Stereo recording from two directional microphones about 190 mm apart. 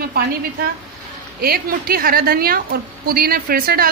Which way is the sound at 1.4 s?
50° right (ahead or behind).